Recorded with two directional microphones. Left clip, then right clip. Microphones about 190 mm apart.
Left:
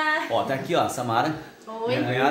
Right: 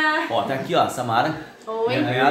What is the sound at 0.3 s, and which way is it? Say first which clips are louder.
Speech: right 2 dB; 25° left (ahead or behind).